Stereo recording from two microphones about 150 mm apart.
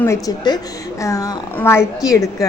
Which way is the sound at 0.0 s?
20° left (ahead or behind).